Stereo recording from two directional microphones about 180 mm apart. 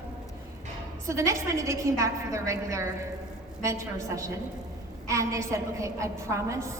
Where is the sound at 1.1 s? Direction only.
15° right (ahead or behind).